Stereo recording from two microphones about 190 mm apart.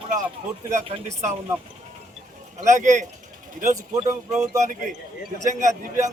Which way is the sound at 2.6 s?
40° right (ahead or behind).